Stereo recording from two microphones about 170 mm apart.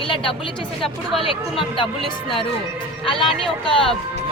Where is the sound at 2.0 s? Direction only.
Centre (ahead or behind).